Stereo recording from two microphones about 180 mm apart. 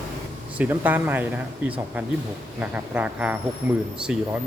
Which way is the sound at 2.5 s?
10° right (ahead or behind).